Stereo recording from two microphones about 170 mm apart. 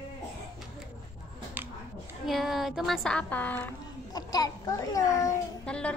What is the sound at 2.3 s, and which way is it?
A woman's voice, centre (ahead or behind).